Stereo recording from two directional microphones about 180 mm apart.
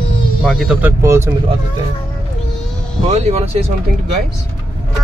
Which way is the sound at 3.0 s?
40° right (ahead or behind).